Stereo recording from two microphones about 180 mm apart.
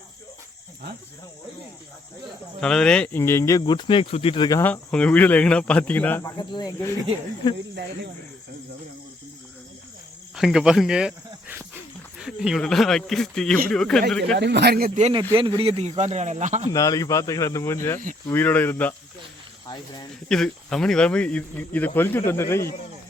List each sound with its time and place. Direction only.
2.6 s speech: 5° left (ahead or behind)
3.6 s speech: 25° left (ahead or behind)
4.7 s speech: 5° left (ahead or behind)
6.3 s speech: 25° left (ahead or behind)
10.3 s cricket: centre (ahead or behind)
12.2 s speech: centre (ahead or behind)
14.3 s speech: 70° right (ahead or behind)
15.3 s speech: 30° right (ahead or behind)
16.7 s speech: 20° left (ahead or behind)
19.6 s speech: 25° left (ahead or behind)
20.2 s speech: 5° left (ahead or behind)